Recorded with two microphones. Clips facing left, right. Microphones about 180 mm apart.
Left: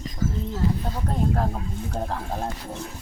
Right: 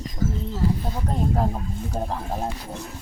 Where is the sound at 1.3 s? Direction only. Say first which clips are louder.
Right 2 dB; 10° right (ahead or behind).